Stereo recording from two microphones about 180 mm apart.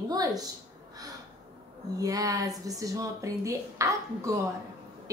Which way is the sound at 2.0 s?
20° right (ahead or behind).